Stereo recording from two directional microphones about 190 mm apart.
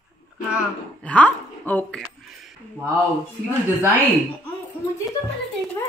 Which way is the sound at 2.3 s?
Centre (ahead or behind).